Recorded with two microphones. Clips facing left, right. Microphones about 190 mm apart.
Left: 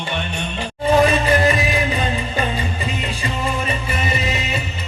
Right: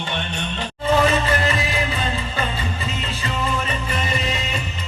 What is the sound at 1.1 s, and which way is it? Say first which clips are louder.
Music: left 4 dB; 15° left (ahead or behind).